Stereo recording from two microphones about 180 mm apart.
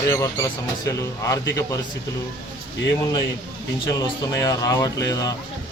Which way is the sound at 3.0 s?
25° left (ahead or behind).